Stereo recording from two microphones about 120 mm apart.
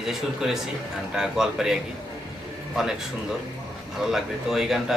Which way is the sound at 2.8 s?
5° right (ahead or behind).